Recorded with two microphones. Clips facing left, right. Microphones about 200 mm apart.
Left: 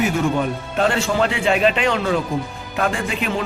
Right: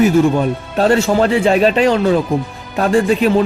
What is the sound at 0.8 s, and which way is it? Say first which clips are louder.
A man's voice: right 6 dB; 40° right (ahead or behind).